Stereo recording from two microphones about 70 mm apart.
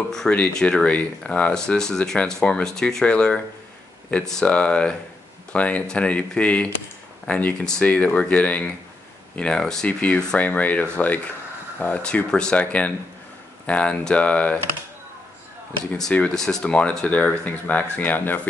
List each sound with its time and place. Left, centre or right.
0.3 s speech: centre
7.6 s speech: centre
9.8 s speech: centre
16.1 s speech: centre